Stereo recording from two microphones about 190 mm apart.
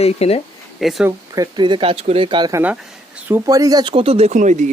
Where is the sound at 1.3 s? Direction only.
20° right (ahead or behind); by 4.7 s 40° right (ahead or behind).